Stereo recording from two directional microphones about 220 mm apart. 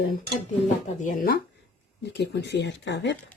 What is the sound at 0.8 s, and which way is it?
Speech, 35° left (ahead or behind).